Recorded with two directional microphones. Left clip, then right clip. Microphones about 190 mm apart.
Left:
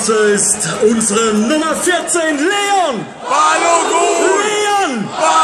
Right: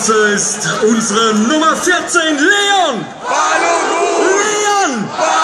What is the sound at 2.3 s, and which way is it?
Speech, 20° left (ahead or behind).